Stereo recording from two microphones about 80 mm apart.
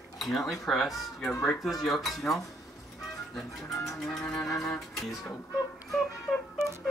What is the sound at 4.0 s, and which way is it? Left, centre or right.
Speech, centre.